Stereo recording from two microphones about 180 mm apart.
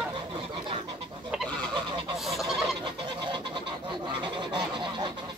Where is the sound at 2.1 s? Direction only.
Centre (ahead or behind).